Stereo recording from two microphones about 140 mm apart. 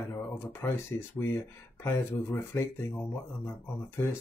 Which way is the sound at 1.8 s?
15° left (ahead or behind).